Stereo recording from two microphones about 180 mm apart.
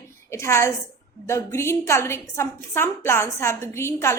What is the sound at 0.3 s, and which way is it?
A woman's voice, 15° left (ahead or behind).